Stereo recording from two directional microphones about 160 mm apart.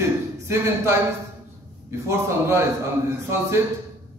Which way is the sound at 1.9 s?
15° right (ahead or behind).